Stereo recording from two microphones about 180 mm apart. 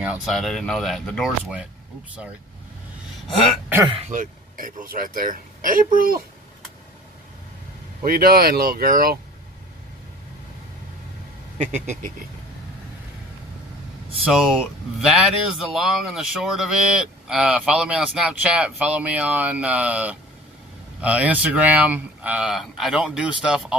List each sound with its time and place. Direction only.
0.0 s speech: 5° right (ahead or behind)
3.4 s speech: 10° right (ahead or behind)
4.1 s speech: 50° right (ahead or behind)
8.0 s speech: 55° right (ahead or behind)
11.5 s speech: 40° right (ahead or behind)
14.3 s speech: centre (ahead or behind)